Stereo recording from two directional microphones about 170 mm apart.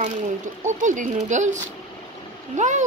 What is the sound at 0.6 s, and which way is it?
Speech, 45° right (ahead or behind).